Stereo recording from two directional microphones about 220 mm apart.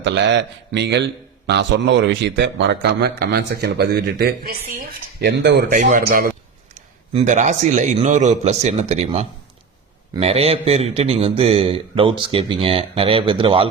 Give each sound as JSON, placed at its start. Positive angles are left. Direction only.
{"t": 0.0, "sound": "a man's voice", "side_deg": -55}
{"t": 5.9, "sound": "a man's voice", "side_deg": -40}